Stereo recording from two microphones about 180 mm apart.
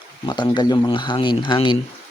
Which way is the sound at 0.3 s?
25° left (ahead or behind).